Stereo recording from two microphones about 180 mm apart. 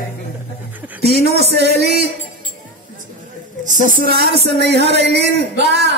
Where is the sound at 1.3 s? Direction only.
65° right (ahead or behind).